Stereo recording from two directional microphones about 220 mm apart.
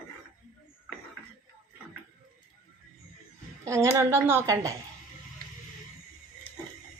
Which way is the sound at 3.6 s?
15° right (ahead or behind).